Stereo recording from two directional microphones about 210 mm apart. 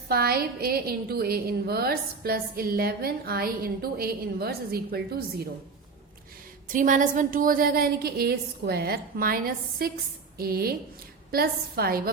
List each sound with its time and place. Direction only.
0.1 s a woman's voice: 45° right (ahead or behind)
6.7 s a woman's voice: 40° right (ahead or behind)